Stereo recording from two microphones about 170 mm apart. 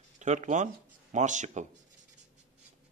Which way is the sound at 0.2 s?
45° right (ahead or behind).